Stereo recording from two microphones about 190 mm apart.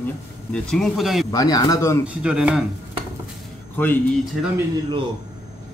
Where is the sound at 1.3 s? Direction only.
20° left (ahead or behind).